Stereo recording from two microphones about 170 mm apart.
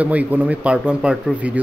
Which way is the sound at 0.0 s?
10° right (ahead or behind).